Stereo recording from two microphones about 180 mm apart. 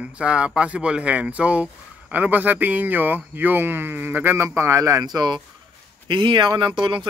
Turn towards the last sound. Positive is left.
turn(degrees=-25)  # may be behind; listen again after turning